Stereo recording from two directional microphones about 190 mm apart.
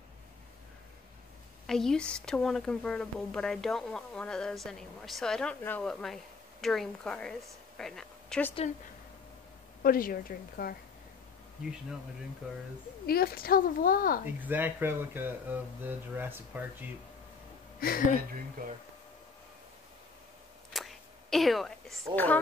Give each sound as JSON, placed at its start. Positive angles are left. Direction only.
{"t": 1.7, "sound": "a woman's voice", "side_deg": 5}
{"t": 9.8, "sound": "speech", "side_deg": 50}
{"t": 13.0, "sound": "speech", "side_deg": 55}
{"t": 14.2, "sound": "speech", "side_deg": -10}
{"t": 17.7, "sound": "speech", "side_deg": 50}
{"t": 18.6, "sound": "speech", "side_deg": -50}
{"t": 20.7, "sound": "a sound", "side_deg": 0}
{"t": 22.1, "sound": "speech", "side_deg": 10}